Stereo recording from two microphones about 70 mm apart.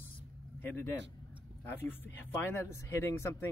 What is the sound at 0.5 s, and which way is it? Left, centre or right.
Speech, left.